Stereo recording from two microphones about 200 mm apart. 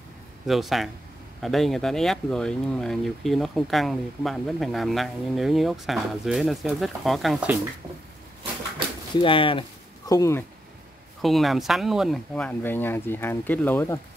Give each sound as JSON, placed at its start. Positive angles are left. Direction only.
{"t": 0.5, "sound": "speech", "side_deg": 0}
{"t": 9.1, "sound": "speech", "side_deg": 25}
{"t": 11.1, "sound": "speech", "side_deg": 0}